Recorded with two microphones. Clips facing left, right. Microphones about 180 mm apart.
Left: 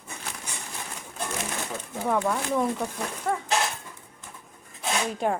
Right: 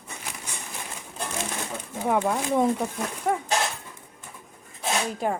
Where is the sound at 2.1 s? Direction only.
20° right (ahead or behind).